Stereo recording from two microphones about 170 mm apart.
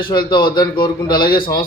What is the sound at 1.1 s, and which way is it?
Speech, 60° left (ahead or behind).